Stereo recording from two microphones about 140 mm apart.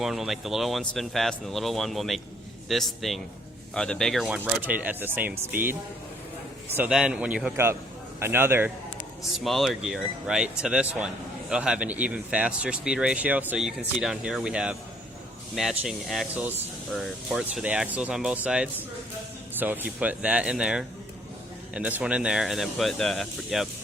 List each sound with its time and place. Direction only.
0.0 s speech: centre (ahead or behind)
4.3 s speech: 10° right (ahead or behind)
6.7 s speech: 5° right (ahead or behind)
7.5 s a man's voice: 20° right (ahead or behind)
9.4 s speech: centre (ahead or behind)